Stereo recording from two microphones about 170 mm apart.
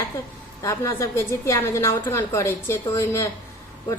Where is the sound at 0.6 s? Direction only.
15° left (ahead or behind).